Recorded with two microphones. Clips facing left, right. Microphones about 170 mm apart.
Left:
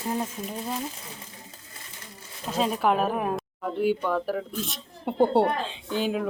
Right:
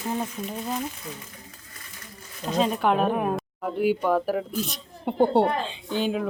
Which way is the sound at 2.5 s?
5° left (ahead or behind).